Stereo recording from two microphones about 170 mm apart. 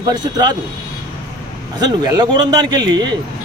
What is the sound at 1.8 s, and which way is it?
A man's voice, 25° right (ahead or behind).